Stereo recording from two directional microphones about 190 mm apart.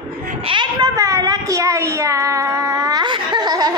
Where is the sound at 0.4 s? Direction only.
25° right (ahead or behind).